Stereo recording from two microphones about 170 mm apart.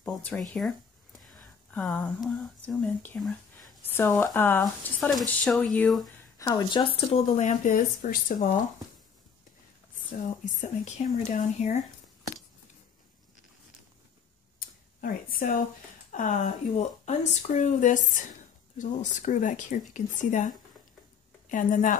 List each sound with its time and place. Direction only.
0.0 s speech: 10° left (ahead or behind)
3.2 s whispering: centre (ahead or behind)
3.8 s speech: 15° left (ahead or behind)
6.3 s speech: 20° left (ahead or behind)
7.1 s speech: 45° left (ahead or behind)
10.4 s speech: 45° left (ahead or behind)
14.6 s a sound: 55° left (ahead or behind)
16.1 s speech: 45° left (ahead or behind)